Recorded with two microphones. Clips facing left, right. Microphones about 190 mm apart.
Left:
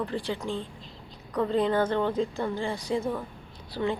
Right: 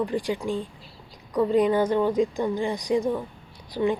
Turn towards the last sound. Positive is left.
turn(degrees=-15)  # may be behind; listen again after turning